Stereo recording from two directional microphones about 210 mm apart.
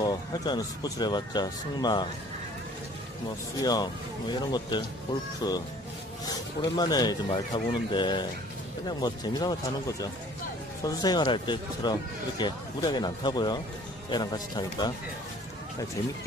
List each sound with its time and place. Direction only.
0.0 s speech: 20° left (ahead or behind)
3.6 s speech: 20° left (ahead or behind)